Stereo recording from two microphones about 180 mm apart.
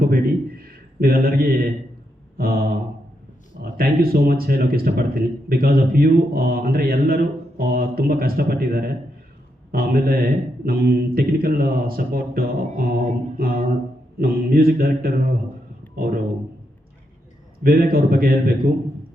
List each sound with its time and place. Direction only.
0.0 s a sound: 55° right (ahead or behind)
2.4 s speech: 55° right (ahead or behind)
17.6 s speech: 55° right (ahead or behind)